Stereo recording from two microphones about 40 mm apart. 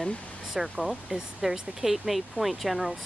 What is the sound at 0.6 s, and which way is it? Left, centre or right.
Speech, centre.